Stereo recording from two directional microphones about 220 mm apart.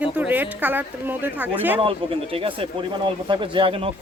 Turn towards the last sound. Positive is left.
turn(degrees=-25)  # may be behind; listen again after turning